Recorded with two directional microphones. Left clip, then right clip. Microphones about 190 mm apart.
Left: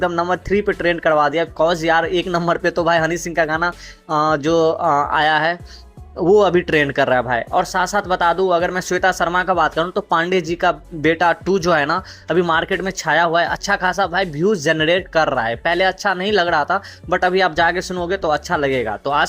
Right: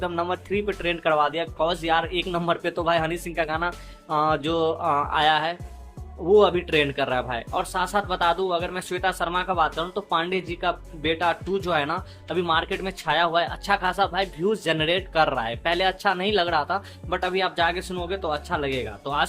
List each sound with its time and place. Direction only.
0.0 s speech: 20° left (ahead or behind)